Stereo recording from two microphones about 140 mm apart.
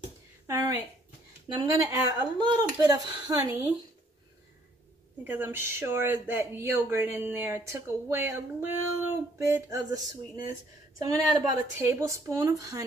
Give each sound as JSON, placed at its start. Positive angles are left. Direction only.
{"t": 0.5, "sound": "a sound", "side_deg": -25}
{"t": 1.6, "sound": "a woman's voice", "side_deg": -25}
{"t": 5.2, "sound": "a woman's voice", "side_deg": -15}